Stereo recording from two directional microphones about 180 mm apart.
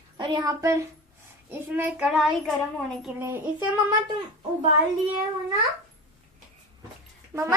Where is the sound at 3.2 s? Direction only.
10° right (ahead or behind).